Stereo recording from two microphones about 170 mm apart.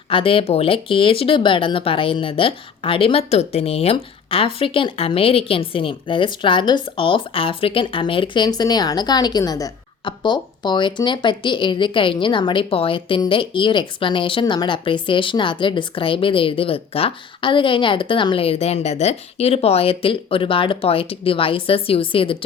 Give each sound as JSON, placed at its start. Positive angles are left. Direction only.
{"t": 0.1, "sound": "speech", "side_deg": 30}